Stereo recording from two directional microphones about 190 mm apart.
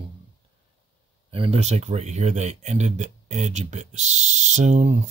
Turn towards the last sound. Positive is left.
turn(degrees=-35)  # may be behind; listen again after turning